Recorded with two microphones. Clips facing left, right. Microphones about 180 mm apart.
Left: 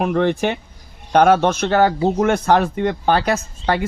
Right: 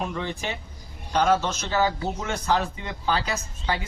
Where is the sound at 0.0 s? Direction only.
65° left (ahead or behind).